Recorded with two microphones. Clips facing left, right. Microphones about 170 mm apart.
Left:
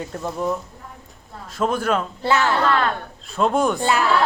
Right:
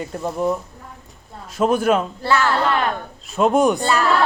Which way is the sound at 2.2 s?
15° left (ahead or behind).